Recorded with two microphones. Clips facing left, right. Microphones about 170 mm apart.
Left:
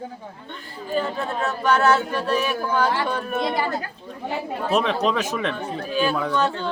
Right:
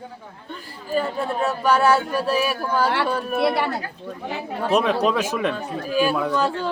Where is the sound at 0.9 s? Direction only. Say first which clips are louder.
Right 2 dB; 10° right (ahead or behind).